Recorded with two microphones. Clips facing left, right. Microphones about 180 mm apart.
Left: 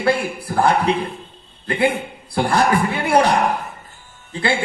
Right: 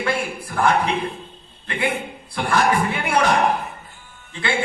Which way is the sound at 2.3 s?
35° left (ahead or behind).